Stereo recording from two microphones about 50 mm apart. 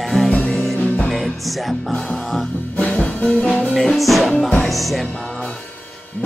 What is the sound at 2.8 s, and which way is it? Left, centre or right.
Music, left.